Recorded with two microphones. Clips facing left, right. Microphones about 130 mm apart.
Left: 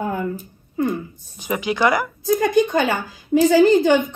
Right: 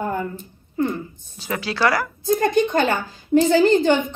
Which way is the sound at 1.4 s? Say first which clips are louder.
Left 2 dB; 20° left (ahead or behind).